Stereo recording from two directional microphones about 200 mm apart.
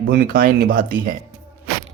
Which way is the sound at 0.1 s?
45° right (ahead or behind).